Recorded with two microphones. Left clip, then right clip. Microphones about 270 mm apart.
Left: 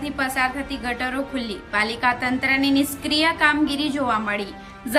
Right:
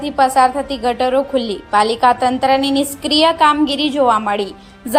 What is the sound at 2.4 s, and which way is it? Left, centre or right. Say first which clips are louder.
A woman's voice: right 6 dB; centre.